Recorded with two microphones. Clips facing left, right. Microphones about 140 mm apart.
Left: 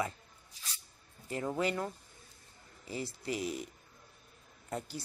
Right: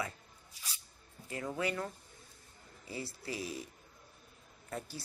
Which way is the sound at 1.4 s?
30° left (ahead or behind).